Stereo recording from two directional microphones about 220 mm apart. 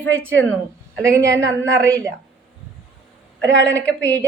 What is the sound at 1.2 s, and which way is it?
Speech, 55° right (ahead or behind).